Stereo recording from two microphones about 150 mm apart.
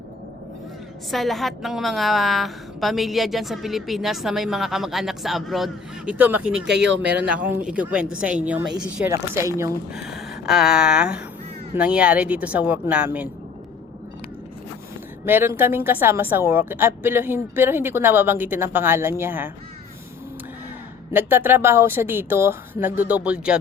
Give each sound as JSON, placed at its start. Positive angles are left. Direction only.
{"t": 1.1, "sound": "a woman's voice", "side_deg": 0}
{"t": 9.9, "sound": "a woman's voice", "side_deg": -5}
{"t": 15.2, "sound": "a woman's voice", "side_deg": -15}
{"t": 21.1, "sound": "a woman's voice", "side_deg": -15}